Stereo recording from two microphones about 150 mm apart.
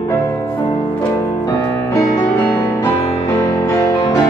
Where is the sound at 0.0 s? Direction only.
20° left (ahead or behind).